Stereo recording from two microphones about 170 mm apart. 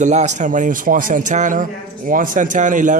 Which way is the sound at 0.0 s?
45° right (ahead or behind).